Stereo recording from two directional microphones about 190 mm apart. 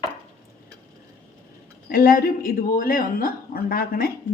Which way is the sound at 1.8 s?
50° left (ahead or behind).